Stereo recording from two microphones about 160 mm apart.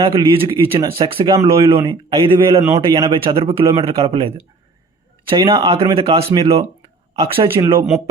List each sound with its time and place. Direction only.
0.0 s speech: 35° right (ahead or behind); by 1.7 s 20° right (ahead or behind)
1.9 s a man's voice: 35° right (ahead or behind)
2.6 s speech: 20° right (ahead or behind)
2.9 s a man's voice: 30° right (ahead or behind)
5.3 s a man's voice: 30° right (ahead or behind)
7.5 s speech: 15° right (ahead or behind)